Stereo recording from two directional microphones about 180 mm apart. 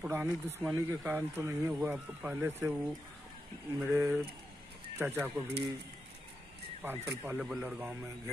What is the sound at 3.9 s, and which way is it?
Speech, 15° right (ahead or behind).